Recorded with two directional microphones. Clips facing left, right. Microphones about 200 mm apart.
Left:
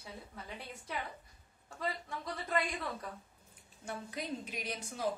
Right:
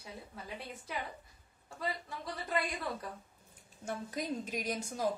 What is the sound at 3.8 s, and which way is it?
A woman's voice, 45° right (ahead or behind).